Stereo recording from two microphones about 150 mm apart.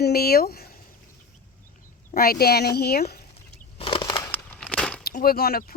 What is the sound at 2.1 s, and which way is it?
Speech, 80° left.